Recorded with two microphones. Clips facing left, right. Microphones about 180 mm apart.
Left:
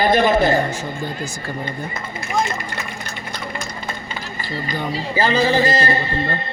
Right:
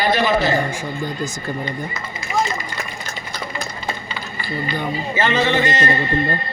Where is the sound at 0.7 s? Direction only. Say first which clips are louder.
Right 1 dB; 15° right (ahead or behind).